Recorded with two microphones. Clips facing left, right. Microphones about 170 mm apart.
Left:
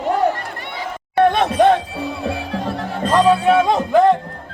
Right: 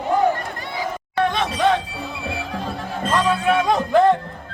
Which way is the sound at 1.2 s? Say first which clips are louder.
Left 6 dB; 55° left (ahead or behind).